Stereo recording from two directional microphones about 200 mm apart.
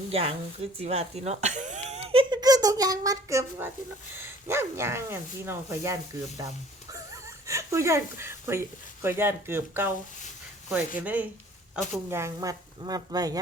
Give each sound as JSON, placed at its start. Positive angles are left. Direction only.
{"t": 0.1, "sound": "speech", "side_deg": -30}